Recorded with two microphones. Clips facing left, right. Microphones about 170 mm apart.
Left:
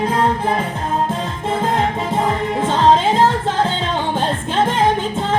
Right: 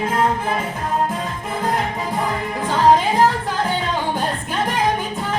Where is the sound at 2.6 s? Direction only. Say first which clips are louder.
Left 1 dB; 25° left (ahead or behind).